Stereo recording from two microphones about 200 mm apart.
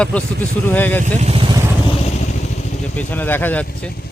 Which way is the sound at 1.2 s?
30° right (ahead or behind).